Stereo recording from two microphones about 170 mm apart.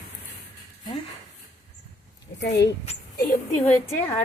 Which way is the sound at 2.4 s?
75° left (ahead or behind).